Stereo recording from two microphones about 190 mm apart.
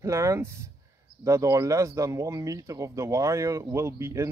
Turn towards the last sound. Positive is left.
turn(degrees=-15)  # may be behind; listen again after turning